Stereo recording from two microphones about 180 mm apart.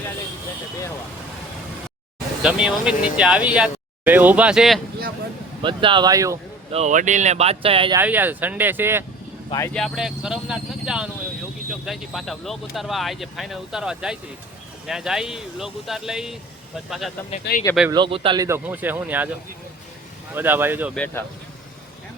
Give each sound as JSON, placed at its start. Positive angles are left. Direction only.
{"t": 2.4, "sound": "speech", "side_deg": -5}
{"t": 5.6, "sound": "speech", "side_deg": -25}
{"t": 6.7, "sound": "speech", "side_deg": -40}
{"t": 7.9, "sound": "speech", "side_deg": -10}
{"t": 9.5, "sound": "speech", "side_deg": 15}
{"t": 9.7, "sound": "speech", "side_deg": 0}
{"t": 17.5, "sound": "speech", "side_deg": 70}
{"t": 17.9, "sound": "speech", "side_deg": -30}
{"t": 18.4, "sound": "speech", "side_deg": -10}
{"t": 20.3, "sound": "speech", "side_deg": -10}
{"t": 20.9, "sound": "speech", "side_deg": 10}